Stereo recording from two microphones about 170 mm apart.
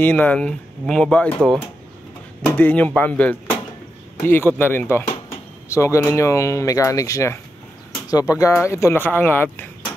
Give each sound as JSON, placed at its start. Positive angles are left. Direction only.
{"t": 0.0, "sound": "speech", "side_deg": 10}